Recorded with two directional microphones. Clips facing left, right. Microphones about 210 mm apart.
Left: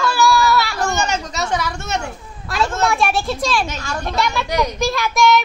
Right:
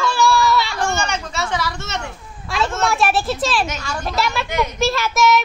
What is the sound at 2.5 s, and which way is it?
Child singing, centre (ahead or behind).